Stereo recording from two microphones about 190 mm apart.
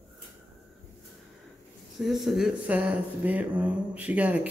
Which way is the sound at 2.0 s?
Centre (ahead or behind).